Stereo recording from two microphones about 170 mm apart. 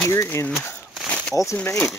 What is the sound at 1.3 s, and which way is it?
Speech, 20° left (ahead or behind).